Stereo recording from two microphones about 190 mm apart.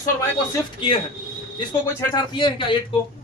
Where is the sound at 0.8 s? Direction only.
25° left (ahead or behind).